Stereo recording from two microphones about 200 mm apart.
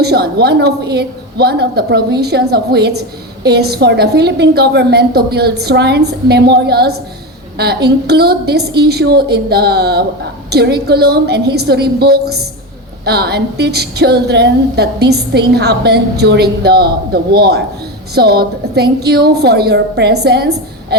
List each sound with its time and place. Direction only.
0.0 s a woman's voice: 55° right (ahead or behind)